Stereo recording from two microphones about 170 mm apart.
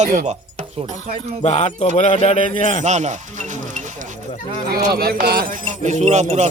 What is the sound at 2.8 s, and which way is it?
Music, 45° right (ahead or behind).